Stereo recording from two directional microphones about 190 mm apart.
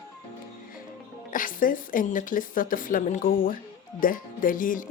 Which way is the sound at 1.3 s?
45° left (ahead or behind).